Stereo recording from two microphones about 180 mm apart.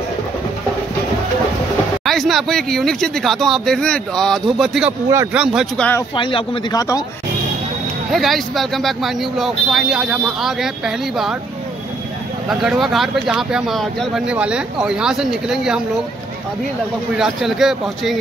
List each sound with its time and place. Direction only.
2.0 s speech: centre (ahead or behind)
5.1 s speech: 15° right (ahead or behind)
5.4 s speech: 5° right (ahead or behind)
6.1 s speech: 30° left (ahead or behind)
8.1 s speech: centre (ahead or behind)
12.4 s speech: centre (ahead or behind)
17.2 s speech: centre (ahead or behind)